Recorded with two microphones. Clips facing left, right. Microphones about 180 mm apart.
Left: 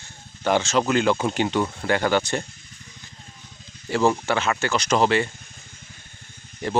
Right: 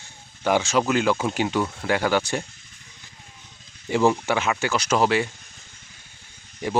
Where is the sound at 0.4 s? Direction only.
10° right (ahead or behind).